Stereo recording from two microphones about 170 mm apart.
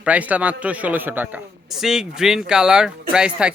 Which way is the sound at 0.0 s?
10° right (ahead or behind).